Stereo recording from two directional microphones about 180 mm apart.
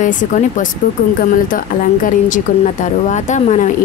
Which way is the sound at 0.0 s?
45° left (ahead or behind).